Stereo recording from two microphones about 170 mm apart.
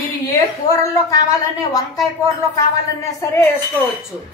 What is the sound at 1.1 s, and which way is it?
Speech, 20° left (ahead or behind).